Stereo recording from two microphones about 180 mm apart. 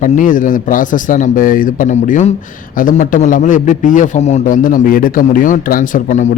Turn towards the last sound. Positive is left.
turn(degrees=45)  # may be behind; listen again after turning